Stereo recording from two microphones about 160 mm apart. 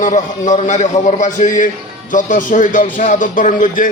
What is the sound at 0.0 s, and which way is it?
A man's voice, 50° left (ahead or behind).